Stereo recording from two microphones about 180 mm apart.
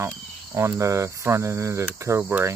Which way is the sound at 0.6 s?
15° right (ahead or behind).